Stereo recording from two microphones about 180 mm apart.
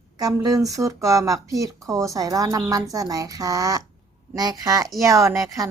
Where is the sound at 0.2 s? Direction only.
20° right (ahead or behind).